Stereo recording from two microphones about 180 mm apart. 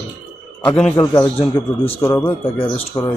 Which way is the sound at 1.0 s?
15° left (ahead or behind).